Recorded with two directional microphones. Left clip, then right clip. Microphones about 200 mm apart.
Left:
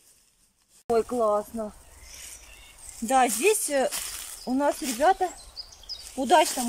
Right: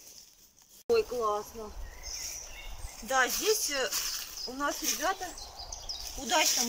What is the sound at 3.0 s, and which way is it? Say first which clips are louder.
Speech: left 6 dB; 65° left (ahead or behind).